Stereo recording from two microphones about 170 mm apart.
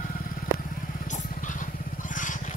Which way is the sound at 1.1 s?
50° left (ahead or behind).